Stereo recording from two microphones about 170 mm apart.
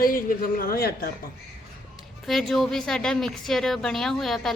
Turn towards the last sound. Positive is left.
turn(degrees=0)  # may be behind; listen again after turning